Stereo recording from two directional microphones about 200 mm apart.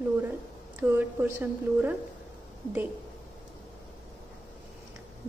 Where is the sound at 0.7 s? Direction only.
10° right (ahead or behind).